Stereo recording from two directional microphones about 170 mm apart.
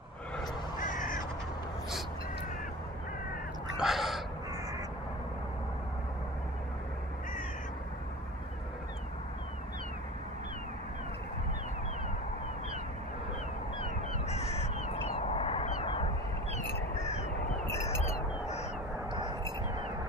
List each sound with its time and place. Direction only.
0.7 s crow: 50° left (ahead or behind)
3.7 s crow: centre (ahead or behind)
14.3 s crow: 40° left (ahead or behind)
19.1 s a sound: 25° right (ahead or behind)